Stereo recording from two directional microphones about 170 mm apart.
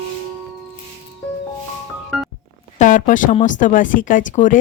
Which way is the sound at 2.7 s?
50° left (ahead or behind).